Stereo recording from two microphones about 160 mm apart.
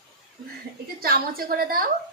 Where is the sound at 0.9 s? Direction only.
70° right (ahead or behind).